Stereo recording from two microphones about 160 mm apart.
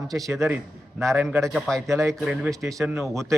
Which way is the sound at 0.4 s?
10° right (ahead or behind).